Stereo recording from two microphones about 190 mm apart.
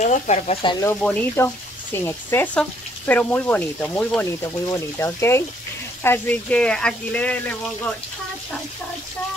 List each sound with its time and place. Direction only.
0.0 s speech: 40° left (ahead or behind)
0.8 s speech: 10° left (ahead or behind)